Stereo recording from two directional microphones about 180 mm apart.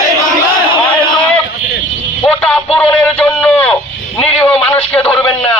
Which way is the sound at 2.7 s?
5° left (ahead or behind).